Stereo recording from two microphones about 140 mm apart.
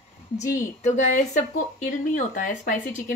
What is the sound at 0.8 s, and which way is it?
Speech, 55° left (ahead or behind).